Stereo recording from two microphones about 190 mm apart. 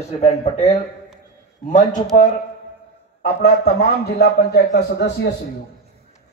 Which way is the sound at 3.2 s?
55° left (ahead or behind).